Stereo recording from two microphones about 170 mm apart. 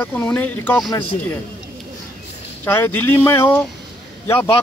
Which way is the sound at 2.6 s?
10° left (ahead or behind).